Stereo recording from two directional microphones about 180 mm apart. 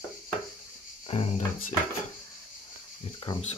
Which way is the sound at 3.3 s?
25° left (ahead or behind).